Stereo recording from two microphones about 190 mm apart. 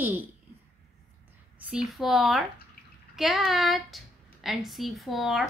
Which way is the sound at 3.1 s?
Centre (ahead or behind).